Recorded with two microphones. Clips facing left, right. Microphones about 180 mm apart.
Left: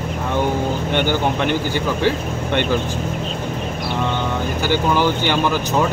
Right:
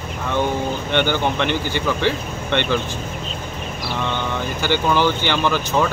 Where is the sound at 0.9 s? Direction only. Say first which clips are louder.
Even; 5° left (ahead or behind).